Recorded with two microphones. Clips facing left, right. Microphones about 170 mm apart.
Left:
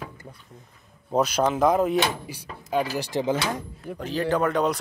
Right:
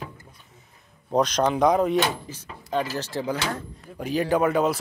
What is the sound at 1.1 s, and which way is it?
Speech, 5° left (ahead or behind).